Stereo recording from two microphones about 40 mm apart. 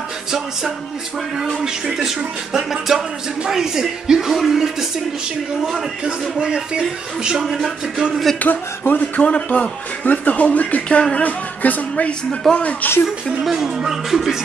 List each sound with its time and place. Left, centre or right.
2.0 s speech: centre
6.4 s speech: right
7.4 s a sound: centre
8.4 s speech: left
9.2 s speech: left
10.9 s speech: left
12.4 s a woman's voice: centre
12.8 s speech: left
13.4 s speech: centre